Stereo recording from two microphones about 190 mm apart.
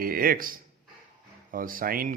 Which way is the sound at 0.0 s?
50° right (ahead or behind).